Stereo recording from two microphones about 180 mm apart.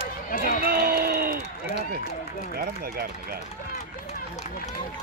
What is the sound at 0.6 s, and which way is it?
Speech, 55° right (ahead or behind).